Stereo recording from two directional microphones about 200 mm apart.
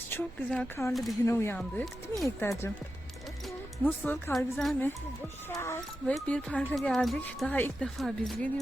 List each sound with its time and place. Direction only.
0.1 s speech: 10° left (ahead or behind)
2.2 s speech: 15° left (ahead or behind)
3.8 s speech: 5° left (ahead or behind)
5.5 s speech: 15° left (ahead or behind)